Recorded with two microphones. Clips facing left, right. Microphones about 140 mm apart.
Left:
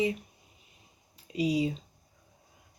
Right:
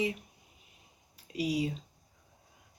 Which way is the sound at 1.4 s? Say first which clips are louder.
Left 4 dB; 25° left (ahead or behind).